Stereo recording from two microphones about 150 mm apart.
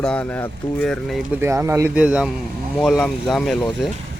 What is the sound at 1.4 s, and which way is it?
Speech, 20° right (ahead or behind).